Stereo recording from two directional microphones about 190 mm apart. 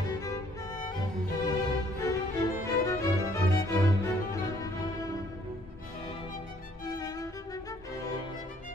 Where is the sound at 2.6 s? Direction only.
15° left (ahead or behind).